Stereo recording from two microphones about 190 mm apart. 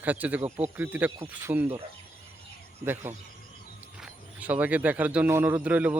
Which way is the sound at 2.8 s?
10° right (ahead or behind).